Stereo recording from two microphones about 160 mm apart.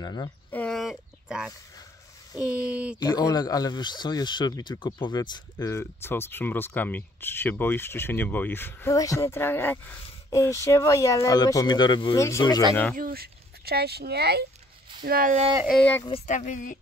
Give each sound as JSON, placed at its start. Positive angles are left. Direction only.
{"t": 0.0, "sound": "speech", "side_deg": 25}
{"t": 0.5, "sound": "a sound", "side_deg": 5}
{"t": 2.4, "sound": "speech", "side_deg": -10}
{"t": 3.0, "sound": "speech", "side_deg": 25}
{"t": 12.2, "sound": "speech", "side_deg": 20}
{"t": 12.9, "sound": "speech", "side_deg": -65}
{"t": 15.0, "sound": "speech", "side_deg": -65}
{"t": 16.3, "sound": "speech", "side_deg": 50}